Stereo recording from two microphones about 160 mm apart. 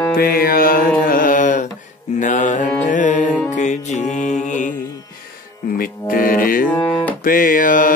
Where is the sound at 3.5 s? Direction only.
50° left (ahead or behind).